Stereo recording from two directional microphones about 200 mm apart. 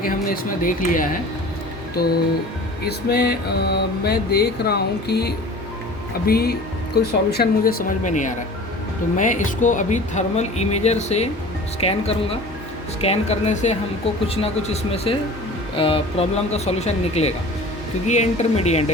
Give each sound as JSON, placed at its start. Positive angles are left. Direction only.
{"t": 0.0, "sound": "mantra", "side_deg": 45}
{"t": 2.8, "sound": "mantra", "side_deg": 55}
{"t": 9.1, "sound": "speech", "side_deg": 40}